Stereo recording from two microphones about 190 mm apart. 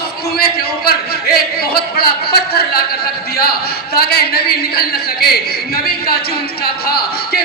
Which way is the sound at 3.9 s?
55° left (ahead or behind).